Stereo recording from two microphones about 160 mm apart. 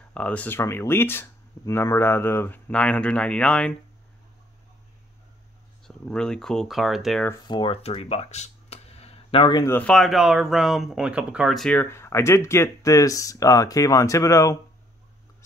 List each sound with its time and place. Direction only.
0.1 s speech: 10° left (ahead or behind)
5.9 s speech: 5° left (ahead or behind)
7.4 s speech: 30° left (ahead or behind)
9.6 s speech: 15° left (ahead or behind)